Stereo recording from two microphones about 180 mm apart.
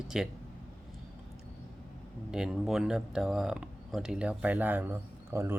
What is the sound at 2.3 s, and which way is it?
Speech, 5° right (ahead or behind).